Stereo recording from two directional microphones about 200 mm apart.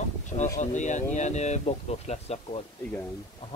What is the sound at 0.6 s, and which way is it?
Speech, 35° left (ahead or behind).